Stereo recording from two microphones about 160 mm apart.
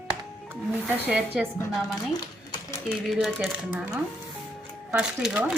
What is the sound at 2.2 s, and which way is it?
Typewriter, 25° left (ahead or behind).